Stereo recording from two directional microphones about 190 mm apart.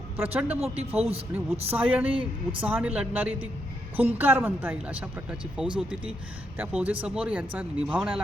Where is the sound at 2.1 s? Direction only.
30° right (ahead or behind).